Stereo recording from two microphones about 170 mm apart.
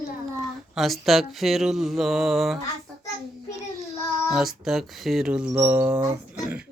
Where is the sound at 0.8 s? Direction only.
Centre (ahead or behind).